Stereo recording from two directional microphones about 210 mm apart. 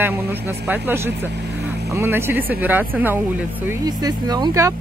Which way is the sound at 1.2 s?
55° right (ahead or behind).